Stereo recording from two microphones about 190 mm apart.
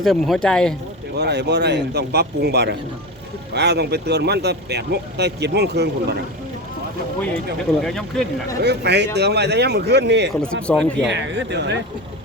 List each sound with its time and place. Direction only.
0.0 s speech: centre (ahead or behind)
1.1 s speech: 60° right (ahead or behind)
7.8 s speech: 5° left (ahead or behind)
8.6 s speech: 60° right (ahead or behind)
10.4 s speech: 5° left (ahead or behind)
11.0 s speech: 65° right (ahead or behind)